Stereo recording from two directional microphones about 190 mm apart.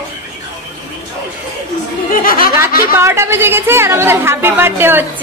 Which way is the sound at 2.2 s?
50° left (ahead or behind).